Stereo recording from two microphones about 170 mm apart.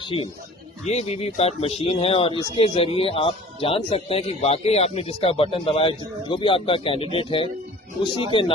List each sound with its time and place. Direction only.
0.0 s speech: 30° left (ahead or behind)